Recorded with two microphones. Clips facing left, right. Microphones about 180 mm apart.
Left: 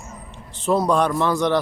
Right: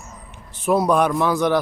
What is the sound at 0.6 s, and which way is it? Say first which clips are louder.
Speech: right 1 dB; 15° right (ahead or behind).